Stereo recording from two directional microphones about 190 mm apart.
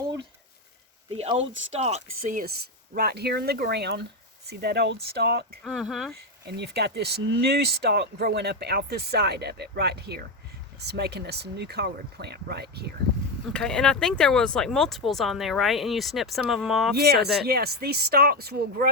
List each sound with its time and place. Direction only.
1.1 s a sound: 30° right (ahead or behind)
1.7 s speech: 35° right (ahead or behind)
2.9 s speech: 55° right (ahead or behind)
5.6 s speech: centre (ahead or behind)
6.4 s speech: 60° right (ahead or behind)
13.5 s speech: 5° left (ahead or behind)
16.9 s speech: 55° right (ahead or behind)